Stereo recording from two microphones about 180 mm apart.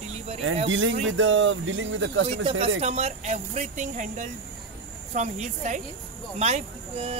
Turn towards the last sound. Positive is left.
turn(degrees=-35)  # may be behind; listen again after turning